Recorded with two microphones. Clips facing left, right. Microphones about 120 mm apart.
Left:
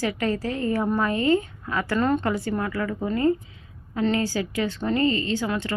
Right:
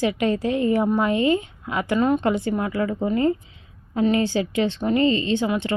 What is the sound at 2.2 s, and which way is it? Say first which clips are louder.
Speech: right 3 dB; 20° right (ahead or behind).